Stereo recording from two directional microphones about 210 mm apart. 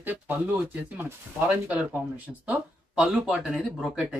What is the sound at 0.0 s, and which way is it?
Speech, 10° right (ahead or behind).